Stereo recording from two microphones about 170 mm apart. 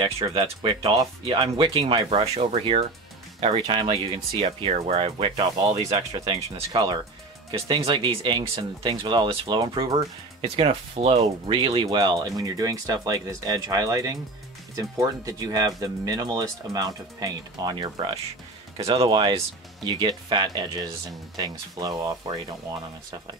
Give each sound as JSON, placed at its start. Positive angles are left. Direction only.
{"t": 0.0, "sound": "speech", "side_deg": -25}